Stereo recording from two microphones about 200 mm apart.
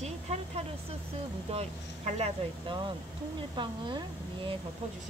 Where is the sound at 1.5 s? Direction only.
30° right (ahead or behind).